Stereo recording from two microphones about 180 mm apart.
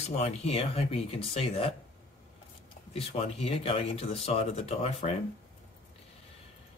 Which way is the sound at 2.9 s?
30° left (ahead or behind).